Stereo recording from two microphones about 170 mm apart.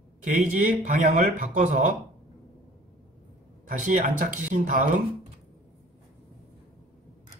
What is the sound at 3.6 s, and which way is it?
Speech, 50° right (ahead or behind).